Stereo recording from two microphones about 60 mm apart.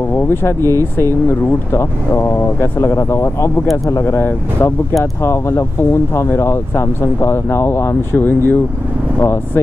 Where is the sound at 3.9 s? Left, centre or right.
Left.